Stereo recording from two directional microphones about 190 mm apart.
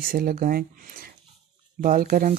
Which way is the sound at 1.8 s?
45° right (ahead or behind).